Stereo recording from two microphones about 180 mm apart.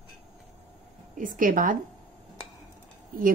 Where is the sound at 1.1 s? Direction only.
45° right (ahead or behind).